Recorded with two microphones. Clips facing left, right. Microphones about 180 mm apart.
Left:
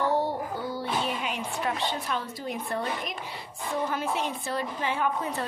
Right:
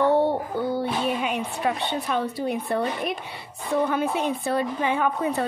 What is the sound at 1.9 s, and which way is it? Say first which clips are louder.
Speech: right 6 dB; 65° right (ahead or behind).